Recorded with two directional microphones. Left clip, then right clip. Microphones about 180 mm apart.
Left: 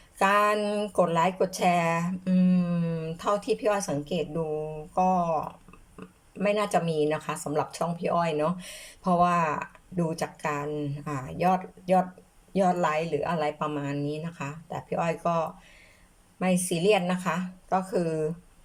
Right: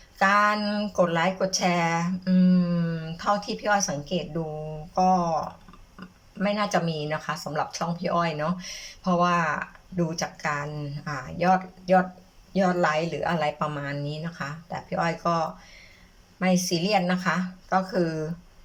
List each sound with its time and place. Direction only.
0.2 s a woman's voice: 20° left (ahead or behind)
6.4 s a woman's voice: 20° left (ahead or behind)